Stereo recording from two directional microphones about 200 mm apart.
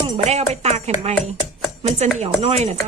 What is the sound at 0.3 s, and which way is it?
Speech, 35° right (ahead or behind).